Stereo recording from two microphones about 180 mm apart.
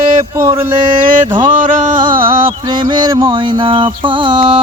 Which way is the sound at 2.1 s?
30° right (ahead or behind).